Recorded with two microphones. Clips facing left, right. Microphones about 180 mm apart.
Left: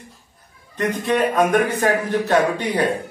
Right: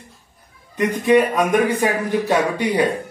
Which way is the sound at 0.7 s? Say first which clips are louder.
Right 4 dB; 10° right (ahead or behind).